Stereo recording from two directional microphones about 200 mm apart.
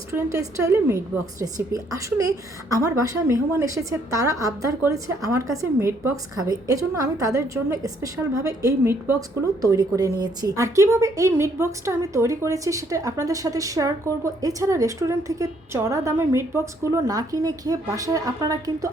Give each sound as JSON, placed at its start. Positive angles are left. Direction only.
{"t": 0.1, "sound": "speech", "side_deg": -15}